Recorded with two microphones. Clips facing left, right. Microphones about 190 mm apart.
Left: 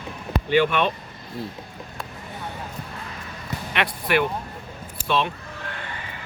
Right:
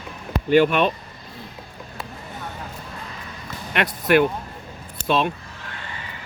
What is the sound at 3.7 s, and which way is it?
Speech, 45° right (ahead or behind).